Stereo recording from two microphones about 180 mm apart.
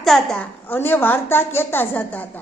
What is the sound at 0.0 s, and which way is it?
A woman's voice, centre (ahead or behind).